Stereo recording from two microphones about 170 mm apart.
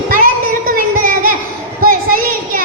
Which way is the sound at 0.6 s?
55° right (ahead or behind).